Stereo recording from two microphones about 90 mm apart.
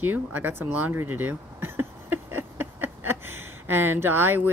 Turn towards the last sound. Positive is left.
turn(degrees=-20)  # may be behind; listen again after turning